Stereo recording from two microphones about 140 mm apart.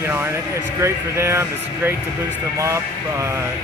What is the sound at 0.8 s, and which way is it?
Speech, 20° right (ahead or behind).